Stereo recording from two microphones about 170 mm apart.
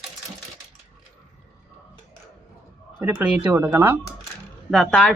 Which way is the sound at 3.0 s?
10° right (ahead or behind).